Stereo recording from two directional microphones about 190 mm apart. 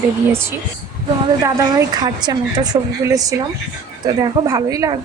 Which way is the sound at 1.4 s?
15° right (ahead or behind).